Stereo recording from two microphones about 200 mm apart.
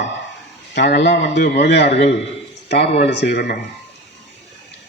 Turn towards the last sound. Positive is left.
turn(degrees=55)  # may be behind; listen again after turning